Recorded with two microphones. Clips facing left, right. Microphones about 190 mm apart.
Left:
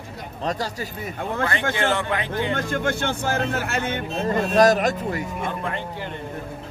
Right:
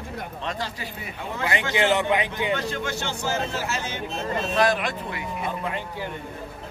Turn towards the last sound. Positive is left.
turn(degrees=-15)  # may be behind; listen again after turning